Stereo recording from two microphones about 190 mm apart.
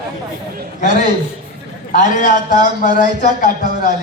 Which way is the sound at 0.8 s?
40° left (ahead or behind).